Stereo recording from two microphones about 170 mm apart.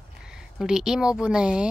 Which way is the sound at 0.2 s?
5° right (ahead or behind).